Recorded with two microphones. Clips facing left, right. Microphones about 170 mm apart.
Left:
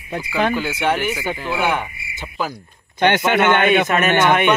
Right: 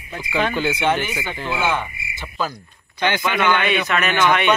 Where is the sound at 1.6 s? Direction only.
15° left (ahead or behind).